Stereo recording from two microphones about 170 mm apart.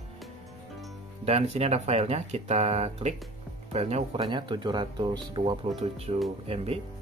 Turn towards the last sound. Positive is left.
turn(degrees=-35)  # may be behind; listen again after turning